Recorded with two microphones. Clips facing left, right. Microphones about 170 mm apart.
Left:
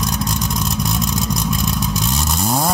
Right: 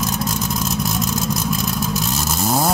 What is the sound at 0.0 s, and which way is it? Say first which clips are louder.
Vehicle: even; centre (ahead or behind).